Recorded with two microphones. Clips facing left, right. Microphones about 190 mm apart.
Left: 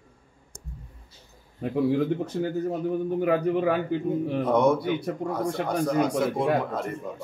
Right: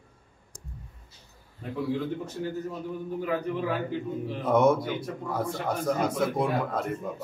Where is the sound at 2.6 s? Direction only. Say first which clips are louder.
Left 8 dB; 60° left (ahead or behind).